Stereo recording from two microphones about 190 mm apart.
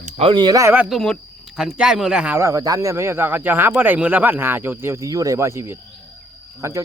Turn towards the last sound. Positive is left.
turn(degrees=-15)  # may be behind; listen again after turning